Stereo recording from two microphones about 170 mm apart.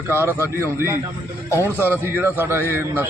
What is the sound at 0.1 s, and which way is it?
Speech, 15° right (ahead or behind).